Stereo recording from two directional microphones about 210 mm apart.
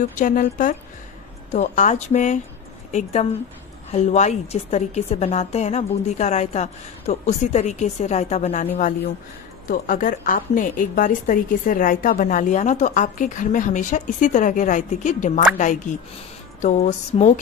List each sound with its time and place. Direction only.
0.1 s a woman's voice: 40° left (ahead or behind)
9.7 s a woman's voice: 40° left (ahead or behind)